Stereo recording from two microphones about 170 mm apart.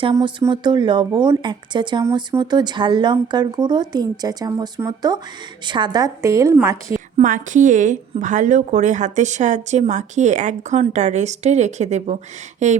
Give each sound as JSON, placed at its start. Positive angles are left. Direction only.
{"t": 0.0, "sound": "speech", "side_deg": -30}
{"t": 7.2, "sound": "a woman's voice", "side_deg": -50}